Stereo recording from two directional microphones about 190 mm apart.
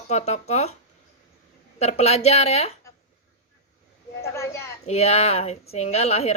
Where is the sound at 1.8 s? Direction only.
35° left (ahead or behind).